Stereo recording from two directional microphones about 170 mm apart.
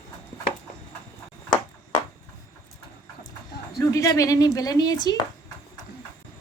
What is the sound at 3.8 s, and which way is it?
Speech, 20° left (ahead or behind).